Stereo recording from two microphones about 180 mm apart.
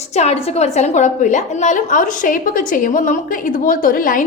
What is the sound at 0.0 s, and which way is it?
A woman's voice, 35° left (ahead or behind).